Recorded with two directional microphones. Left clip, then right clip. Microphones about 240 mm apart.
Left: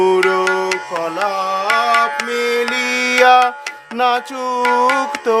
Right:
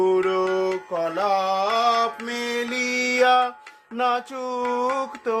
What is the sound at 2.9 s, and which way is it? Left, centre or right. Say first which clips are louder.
Music: left 8 dB; left.